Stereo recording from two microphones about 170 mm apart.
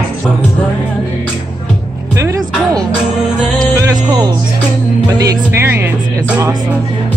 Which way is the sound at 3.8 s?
20° right (ahead or behind).